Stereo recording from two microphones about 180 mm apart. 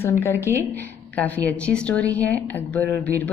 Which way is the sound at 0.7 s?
10° left (ahead or behind).